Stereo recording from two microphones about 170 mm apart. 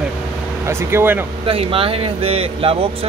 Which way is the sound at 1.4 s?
35° right (ahead or behind).